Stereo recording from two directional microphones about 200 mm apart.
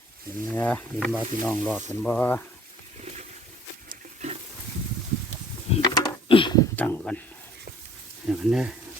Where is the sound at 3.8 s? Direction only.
35° right (ahead or behind).